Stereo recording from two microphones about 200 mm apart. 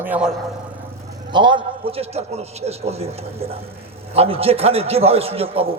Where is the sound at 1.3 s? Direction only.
25° right (ahead or behind).